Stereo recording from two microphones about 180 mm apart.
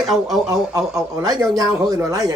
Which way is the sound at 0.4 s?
20° right (ahead or behind).